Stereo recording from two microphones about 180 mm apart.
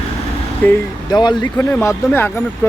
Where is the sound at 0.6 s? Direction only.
10° left (ahead or behind).